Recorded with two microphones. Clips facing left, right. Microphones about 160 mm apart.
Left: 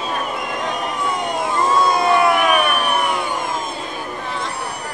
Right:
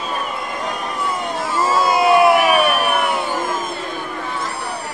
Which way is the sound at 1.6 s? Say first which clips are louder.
Right 1 dB; 5° right (ahead or behind).